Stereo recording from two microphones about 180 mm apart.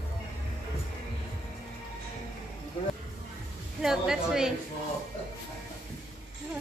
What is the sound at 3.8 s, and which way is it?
Speech, 5° right (ahead or behind).